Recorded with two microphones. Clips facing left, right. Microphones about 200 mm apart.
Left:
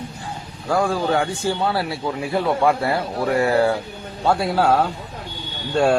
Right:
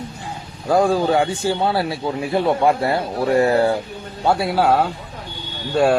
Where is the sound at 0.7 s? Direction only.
20° right (ahead or behind).